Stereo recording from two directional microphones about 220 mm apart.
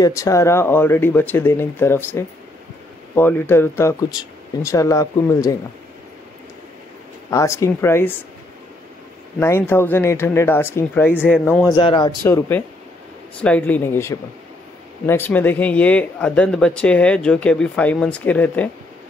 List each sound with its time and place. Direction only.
0.0 s speech: 15° left (ahead or behind)
7.2 s speech: 15° left (ahead or behind)
9.4 s speech: 10° left (ahead or behind)
12.3 s speech: 10° left (ahead or behind)